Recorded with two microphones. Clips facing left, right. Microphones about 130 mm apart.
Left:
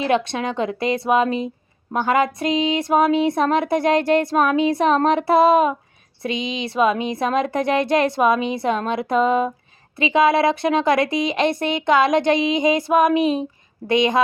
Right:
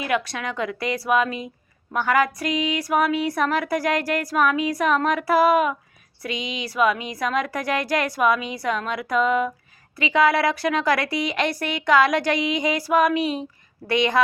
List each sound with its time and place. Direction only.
0.0 s speech: 25° left (ahead or behind)